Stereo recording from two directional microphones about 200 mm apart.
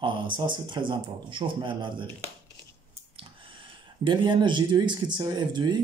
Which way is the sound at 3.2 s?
25° right (ahead or behind).